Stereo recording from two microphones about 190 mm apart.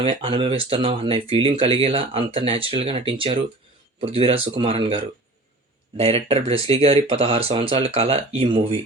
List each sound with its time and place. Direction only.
0.0 s speech: 30° right (ahead or behind)